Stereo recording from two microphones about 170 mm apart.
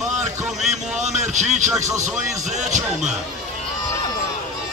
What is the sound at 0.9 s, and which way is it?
Speech, 45° right (ahead or behind).